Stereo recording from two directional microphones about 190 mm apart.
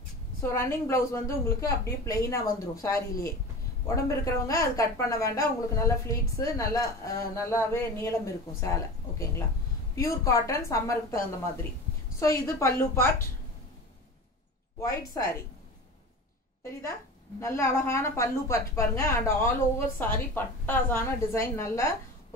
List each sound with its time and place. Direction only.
0.4 s a woman's voice: 15° left (ahead or behind)
12.2 s a woman's voice: 15° left (ahead or behind)
14.8 s a woman's voice: 15° left (ahead or behind)
17.4 s a woman's voice: 15° left (ahead or behind)